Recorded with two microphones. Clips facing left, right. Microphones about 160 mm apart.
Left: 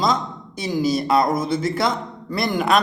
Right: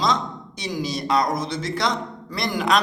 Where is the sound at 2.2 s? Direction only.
Centre (ahead or behind).